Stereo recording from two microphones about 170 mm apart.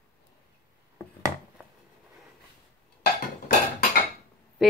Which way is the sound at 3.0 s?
65° left (ahead or behind).